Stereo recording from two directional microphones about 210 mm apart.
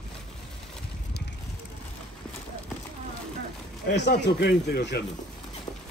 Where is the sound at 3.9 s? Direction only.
55° left (ahead or behind).